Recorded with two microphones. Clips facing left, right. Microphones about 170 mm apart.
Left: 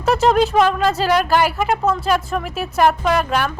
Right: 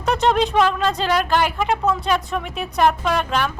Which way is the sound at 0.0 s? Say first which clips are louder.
Left 3 dB; 5° left (ahead or behind).